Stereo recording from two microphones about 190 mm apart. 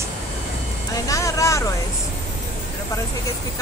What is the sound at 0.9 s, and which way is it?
Vehicle, 15° left (ahead or behind).